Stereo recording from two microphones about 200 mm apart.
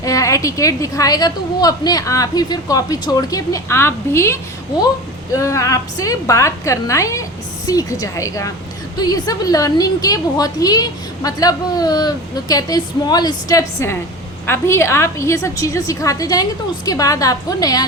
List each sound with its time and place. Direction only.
0.0 s a woman's voice: 15° left (ahead or behind)